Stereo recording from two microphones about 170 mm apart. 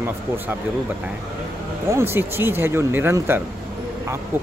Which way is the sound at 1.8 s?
15° right (ahead or behind).